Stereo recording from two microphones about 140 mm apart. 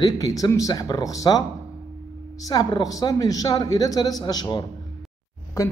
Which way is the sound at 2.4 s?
30° left (ahead or behind).